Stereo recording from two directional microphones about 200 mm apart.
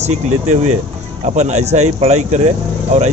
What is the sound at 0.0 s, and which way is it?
Speech, 35° right (ahead or behind).